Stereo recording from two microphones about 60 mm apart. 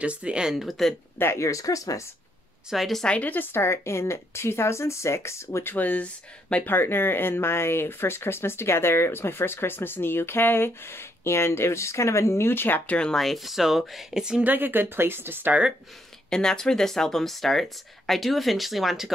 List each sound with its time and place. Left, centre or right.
0.0 s speech: centre
0.6 s speech: centre
1.1 s speech: left
1.4 s speech: left
2.7 s speech: centre
3.0 s speech: centre
3.3 s a woman's voice: left
5.7 s speech: left
13.1 s speech: centre
14.4 s speech: right
16.3 s speech: centre